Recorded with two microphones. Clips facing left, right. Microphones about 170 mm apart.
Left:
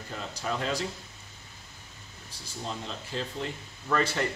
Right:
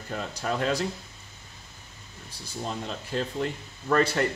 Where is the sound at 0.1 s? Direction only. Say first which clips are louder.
Right 4 dB; 55° right (ahead or behind).